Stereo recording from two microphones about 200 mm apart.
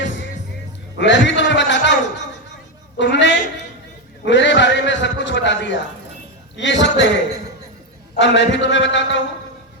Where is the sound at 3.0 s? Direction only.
65° left (ahead or behind).